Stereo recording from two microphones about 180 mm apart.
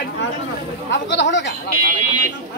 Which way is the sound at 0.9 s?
75° left (ahead or behind).